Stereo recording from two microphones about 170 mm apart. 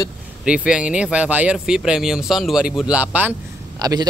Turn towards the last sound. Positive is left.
turn(degrees=-20)  # may be behind; listen again after turning